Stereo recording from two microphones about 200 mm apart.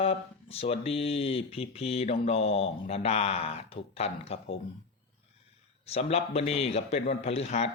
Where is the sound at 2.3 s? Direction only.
30° left (ahead or behind).